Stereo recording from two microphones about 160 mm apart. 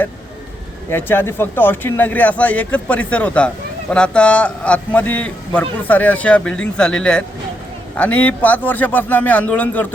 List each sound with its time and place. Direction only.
0.9 s a man's voice: 15° left (ahead or behind)